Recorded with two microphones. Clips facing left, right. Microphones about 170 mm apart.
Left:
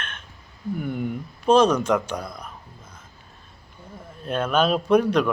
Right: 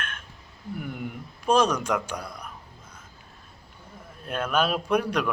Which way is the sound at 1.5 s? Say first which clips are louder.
Left 5 dB; 30° left (ahead or behind).